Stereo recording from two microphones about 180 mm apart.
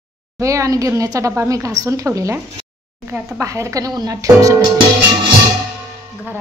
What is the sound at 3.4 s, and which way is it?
A woman's voice, 15° right (ahead or behind).